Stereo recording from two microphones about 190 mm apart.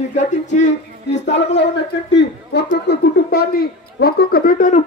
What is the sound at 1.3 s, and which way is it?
Speech, 65° left (ahead or behind).